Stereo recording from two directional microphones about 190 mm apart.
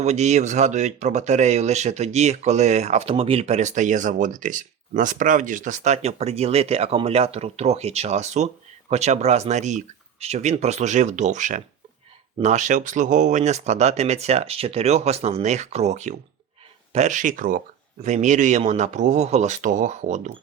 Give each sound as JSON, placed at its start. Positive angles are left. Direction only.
{"t": 0.0, "sound": "speech", "side_deg": -35}